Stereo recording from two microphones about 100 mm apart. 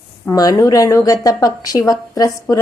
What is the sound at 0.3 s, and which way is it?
A woman's voice, 35° left (ahead or behind).